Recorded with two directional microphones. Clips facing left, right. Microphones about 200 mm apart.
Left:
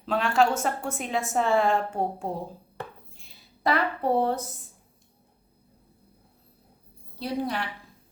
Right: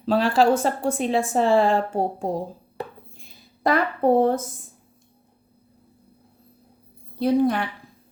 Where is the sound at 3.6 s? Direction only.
45° right (ahead or behind).